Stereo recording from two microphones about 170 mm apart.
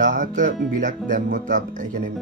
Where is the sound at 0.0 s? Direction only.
45° right (ahead or behind).